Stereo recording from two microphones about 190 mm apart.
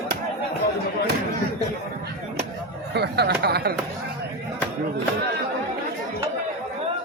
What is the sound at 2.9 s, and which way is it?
Speech, 60° right (ahead or behind).